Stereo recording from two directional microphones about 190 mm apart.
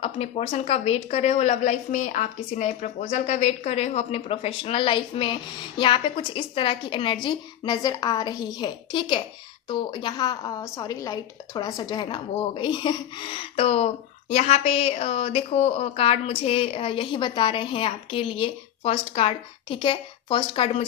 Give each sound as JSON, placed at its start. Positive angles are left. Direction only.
{"t": 0.0, "sound": "a woman's voice", "side_deg": 35}